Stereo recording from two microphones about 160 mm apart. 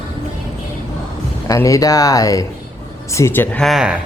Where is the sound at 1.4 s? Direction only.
20° left (ahead or behind); by 3.9 s centre (ahead or behind).